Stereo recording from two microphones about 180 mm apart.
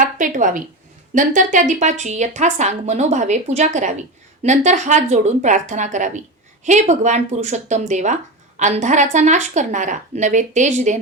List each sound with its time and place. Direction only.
0.0 s a woman's voice: 45° right (ahead or behind)